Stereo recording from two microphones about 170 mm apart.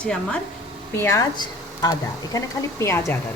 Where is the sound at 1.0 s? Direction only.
20° left (ahead or behind).